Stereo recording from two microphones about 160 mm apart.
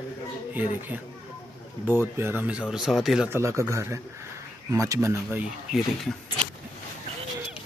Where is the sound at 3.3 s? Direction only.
15° right (ahead or behind).